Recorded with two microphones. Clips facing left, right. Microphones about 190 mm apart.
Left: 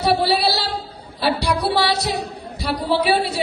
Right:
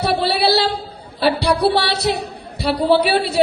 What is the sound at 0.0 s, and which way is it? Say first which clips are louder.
Female singing: even; 65° right (ahead or behind).